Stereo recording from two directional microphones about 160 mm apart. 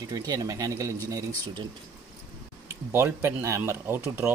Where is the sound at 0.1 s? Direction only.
25° right (ahead or behind).